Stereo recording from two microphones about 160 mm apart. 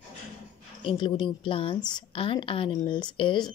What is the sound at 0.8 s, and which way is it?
A woman's voice, 30° left (ahead or behind).